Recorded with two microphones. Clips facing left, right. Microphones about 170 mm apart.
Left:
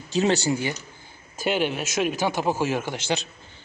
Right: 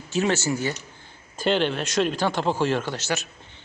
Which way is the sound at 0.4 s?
15° left (ahead or behind).